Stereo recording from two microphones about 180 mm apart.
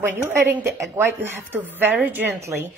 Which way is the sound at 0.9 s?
10° right (ahead or behind).